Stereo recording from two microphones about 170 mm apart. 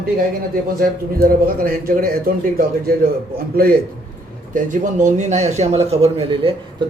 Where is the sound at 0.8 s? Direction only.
60° right (ahead or behind).